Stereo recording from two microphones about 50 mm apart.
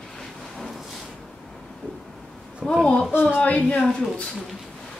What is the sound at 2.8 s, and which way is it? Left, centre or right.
A woman's voice, centre.